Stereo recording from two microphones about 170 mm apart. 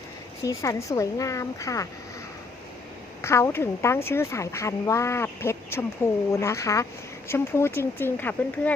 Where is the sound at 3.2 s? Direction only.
15° left (ahead or behind).